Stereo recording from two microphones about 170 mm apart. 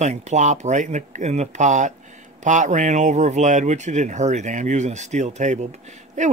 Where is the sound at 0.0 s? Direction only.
45° right (ahead or behind).